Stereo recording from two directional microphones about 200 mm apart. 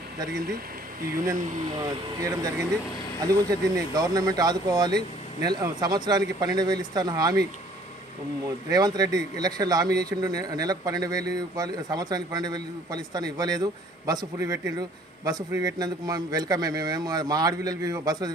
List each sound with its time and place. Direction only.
1.8 s a man's voice: 20° right (ahead or behind)
8.4 s a man's voice: 20° right (ahead or behind)